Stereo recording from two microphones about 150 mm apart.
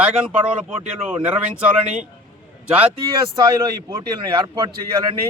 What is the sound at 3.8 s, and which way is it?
A man's voice, 25° right (ahead or behind).